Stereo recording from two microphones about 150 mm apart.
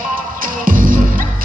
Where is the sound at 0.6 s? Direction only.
70° right (ahead or behind).